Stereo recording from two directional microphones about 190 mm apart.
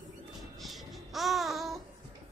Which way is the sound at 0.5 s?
Centre (ahead or behind).